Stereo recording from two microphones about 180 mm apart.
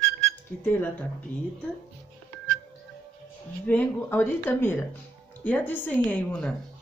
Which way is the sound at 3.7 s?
10° left (ahead or behind).